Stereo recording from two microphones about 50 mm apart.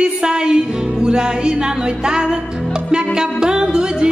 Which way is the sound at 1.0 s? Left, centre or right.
Centre.